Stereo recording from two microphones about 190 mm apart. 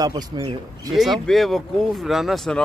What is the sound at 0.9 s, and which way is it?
Speech, centre (ahead or behind).